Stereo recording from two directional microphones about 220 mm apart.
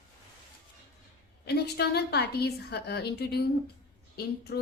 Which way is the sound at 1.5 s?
45° left (ahead or behind).